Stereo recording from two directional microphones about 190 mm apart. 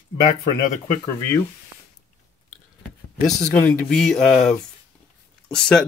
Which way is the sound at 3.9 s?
Centre (ahead or behind).